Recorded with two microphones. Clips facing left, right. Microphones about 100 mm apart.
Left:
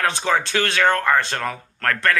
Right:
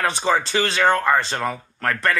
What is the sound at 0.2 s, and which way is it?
A man's voice, 15° right (ahead or behind).